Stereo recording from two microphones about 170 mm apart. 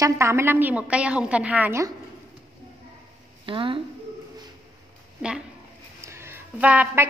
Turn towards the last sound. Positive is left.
turn(degrees=-10)  # may be behind; listen again after turning